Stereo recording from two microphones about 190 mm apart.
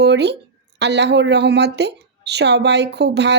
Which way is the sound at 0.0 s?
60° right (ahead or behind).